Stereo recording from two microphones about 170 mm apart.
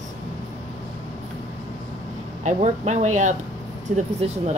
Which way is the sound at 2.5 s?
45° right (ahead or behind).